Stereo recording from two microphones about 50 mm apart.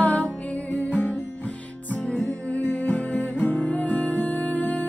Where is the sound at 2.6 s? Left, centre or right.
Left.